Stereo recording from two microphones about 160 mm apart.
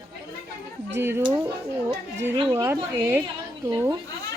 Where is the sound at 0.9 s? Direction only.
15° right (ahead or behind).